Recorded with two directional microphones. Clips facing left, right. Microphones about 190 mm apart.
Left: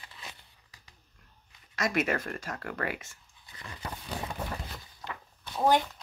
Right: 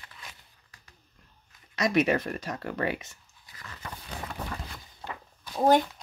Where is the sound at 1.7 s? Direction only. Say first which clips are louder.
Right 5 dB; 20° right (ahead or behind).